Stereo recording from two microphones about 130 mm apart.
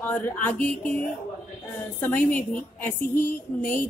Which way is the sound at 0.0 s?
15° left (ahead or behind).